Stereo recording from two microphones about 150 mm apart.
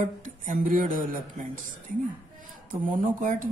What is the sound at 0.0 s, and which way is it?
Speech, 60° right (ahead or behind).